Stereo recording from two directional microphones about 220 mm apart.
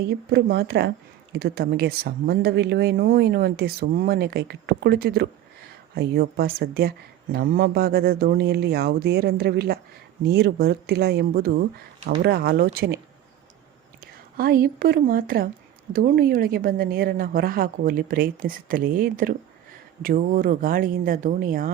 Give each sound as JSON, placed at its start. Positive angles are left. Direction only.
{"t": 0.3, "sound": "speech", "side_deg": -50}
{"t": 14.0, "sound": "a woman's voice", "side_deg": -45}